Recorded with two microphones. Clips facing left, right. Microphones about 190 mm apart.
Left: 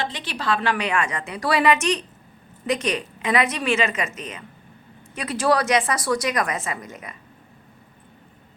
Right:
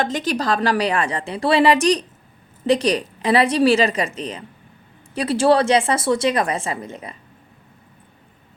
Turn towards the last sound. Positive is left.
turn(degrees=-30)  # may be behind; listen again after turning